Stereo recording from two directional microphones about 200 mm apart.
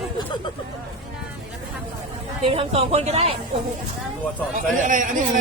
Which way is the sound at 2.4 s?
30° right (ahead or behind).